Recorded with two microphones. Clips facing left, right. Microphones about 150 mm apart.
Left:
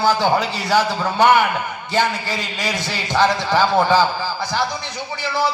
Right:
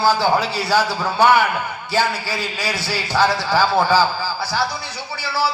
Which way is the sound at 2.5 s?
20° left (ahead or behind).